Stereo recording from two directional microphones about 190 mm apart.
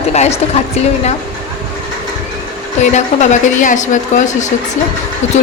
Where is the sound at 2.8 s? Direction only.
40° left (ahead or behind).